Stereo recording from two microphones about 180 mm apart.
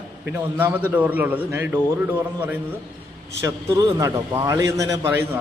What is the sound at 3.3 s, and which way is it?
A man's voice, 20° right (ahead or behind).